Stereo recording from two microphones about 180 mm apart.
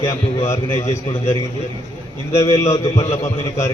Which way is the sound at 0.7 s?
30° left (ahead or behind).